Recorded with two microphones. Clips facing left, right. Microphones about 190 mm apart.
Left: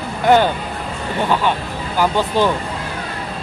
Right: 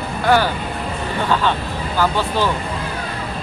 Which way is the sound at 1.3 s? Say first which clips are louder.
Even; 15° left (ahead or behind).